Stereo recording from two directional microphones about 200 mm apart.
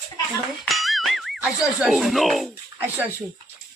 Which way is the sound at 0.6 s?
Centre (ahead or behind).